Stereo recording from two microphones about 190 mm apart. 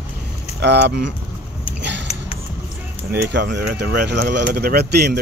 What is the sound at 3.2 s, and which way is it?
Speech, 65° right (ahead or behind).